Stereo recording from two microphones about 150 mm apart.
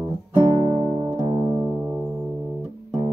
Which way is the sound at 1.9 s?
15° right (ahead or behind).